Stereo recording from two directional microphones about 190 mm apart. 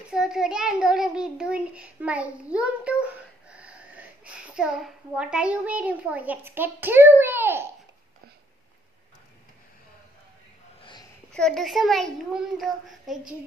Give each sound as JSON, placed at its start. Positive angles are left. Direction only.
{"t": 0.1, "sound": "a child's voice", "side_deg": -5}
{"t": 10.8, "sound": "a sound", "side_deg": 25}
{"t": 11.3, "sound": "a child's voice", "side_deg": 5}